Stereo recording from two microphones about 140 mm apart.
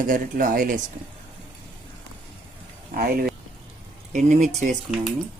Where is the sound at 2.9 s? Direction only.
90° right.